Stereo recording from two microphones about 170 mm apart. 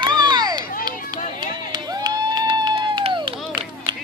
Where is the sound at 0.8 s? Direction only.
25° right (ahead or behind).